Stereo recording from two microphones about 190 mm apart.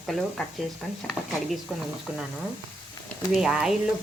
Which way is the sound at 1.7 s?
5° right (ahead or behind).